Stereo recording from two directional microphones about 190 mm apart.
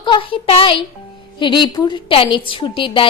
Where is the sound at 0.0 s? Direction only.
25° left (ahead or behind).